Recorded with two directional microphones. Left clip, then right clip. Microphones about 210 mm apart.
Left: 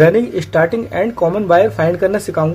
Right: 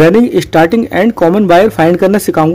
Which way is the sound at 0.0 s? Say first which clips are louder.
Right 4 dB; 45° right (ahead or behind).